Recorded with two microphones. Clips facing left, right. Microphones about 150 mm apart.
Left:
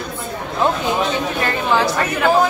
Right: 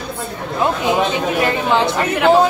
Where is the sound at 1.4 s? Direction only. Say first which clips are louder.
Right 1 dB; 20° right (ahead or behind).